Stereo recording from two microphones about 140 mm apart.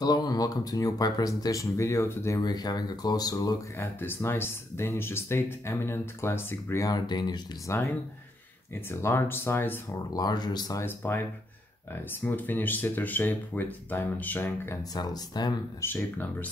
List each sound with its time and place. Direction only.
0.0 s speech: 30° left (ahead or behind)
3.7 s speech: 15° left (ahead or behind)
8.8 s speech: 15° left (ahead or behind)
10.1 s speech: 30° left (ahead or behind); by 14.8 s 15° left (ahead or behind)
14.8 s speech: 30° left (ahead or behind)
15.8 s speech: 15° left (ahead or behind)